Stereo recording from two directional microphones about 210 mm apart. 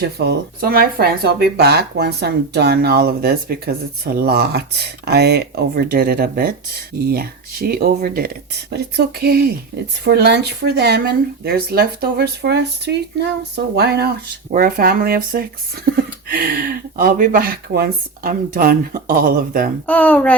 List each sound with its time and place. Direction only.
0.0 s speech: 45° right (ahead or behind)
19.9 s a child's voice: 10° left (ahead or behind)